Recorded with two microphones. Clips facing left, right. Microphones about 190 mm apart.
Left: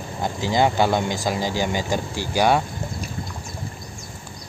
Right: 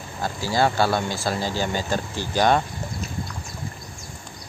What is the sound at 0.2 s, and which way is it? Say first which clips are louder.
Speech: left 2 dB; 20° left (ahead or behind).